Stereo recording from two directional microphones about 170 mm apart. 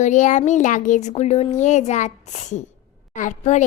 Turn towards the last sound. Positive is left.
turn(degrees=45)  # may be behind; listen again after turning